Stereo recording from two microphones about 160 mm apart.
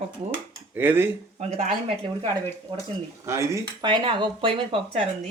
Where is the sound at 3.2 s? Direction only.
20° right (ahead or behind); by 5.0 s 35° right (ahead or behind).